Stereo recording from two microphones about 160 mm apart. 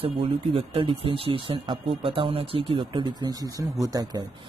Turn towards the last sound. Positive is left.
turn(degrees=-25)  # may be behind; listen again after turning